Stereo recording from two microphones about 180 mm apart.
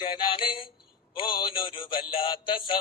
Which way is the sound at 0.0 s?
25° left (ahead or behind).